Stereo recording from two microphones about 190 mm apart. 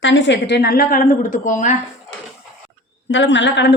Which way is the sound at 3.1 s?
75° left (ahead or behind).